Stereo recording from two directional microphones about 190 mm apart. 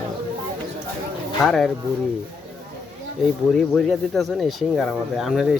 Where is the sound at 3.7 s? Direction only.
Centre (ahead or behind).